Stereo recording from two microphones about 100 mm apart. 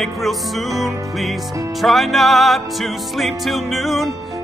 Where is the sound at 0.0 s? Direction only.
Centre (ahead or behind).